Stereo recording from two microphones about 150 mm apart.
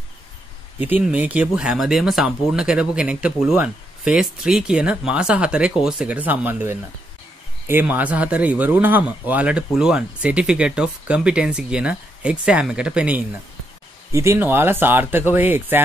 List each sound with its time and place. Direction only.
0.7 s speech: 10° right (ahead or behind)
14.1 s speech: 20° right (ahead or behind)